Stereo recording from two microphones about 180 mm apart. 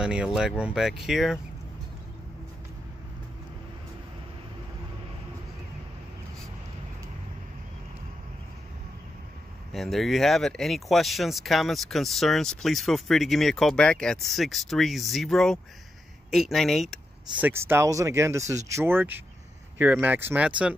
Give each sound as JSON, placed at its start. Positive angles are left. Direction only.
{"t": 0.0, "sound": "speech", "side_deg": -5}
{"t": 9.7, "sound": "speech", "side_deg": 0}
{"t": 17.5, "sound": "speech", "side_deg": -15}